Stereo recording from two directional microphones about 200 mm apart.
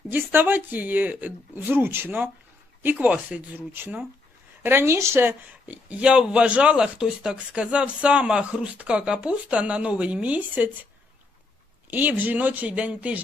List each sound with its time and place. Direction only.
0.1 s speech: 10° right (ahead or behind)
11.9 s speech: 10° right (ahead or behind)